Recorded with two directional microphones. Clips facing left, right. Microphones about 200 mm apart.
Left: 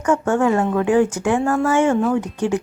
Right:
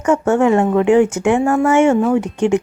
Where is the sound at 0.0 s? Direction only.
25° right (ahead or behind).